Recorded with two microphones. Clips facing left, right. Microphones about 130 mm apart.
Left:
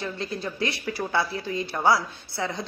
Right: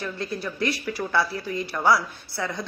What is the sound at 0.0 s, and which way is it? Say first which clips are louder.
Speech: right 1 dB; 25° left (ahead or behind).